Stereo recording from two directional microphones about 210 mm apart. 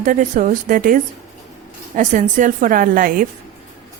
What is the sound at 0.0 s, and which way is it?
A woman's voice, 35° right (ahead or behind).